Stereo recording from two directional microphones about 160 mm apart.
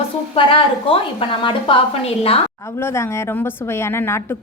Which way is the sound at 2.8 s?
15° left (ahead or behind).